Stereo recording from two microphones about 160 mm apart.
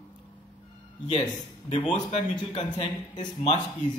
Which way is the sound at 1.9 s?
50° left (ahead or behind).